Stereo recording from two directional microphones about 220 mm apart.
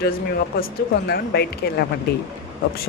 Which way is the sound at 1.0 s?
45° left (ahead or behind).